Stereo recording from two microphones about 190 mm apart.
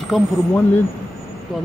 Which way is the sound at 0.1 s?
Centre (ahead or behind).